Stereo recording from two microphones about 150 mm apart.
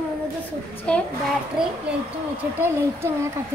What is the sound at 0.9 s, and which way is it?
Speech, 5° left (ahead or behind).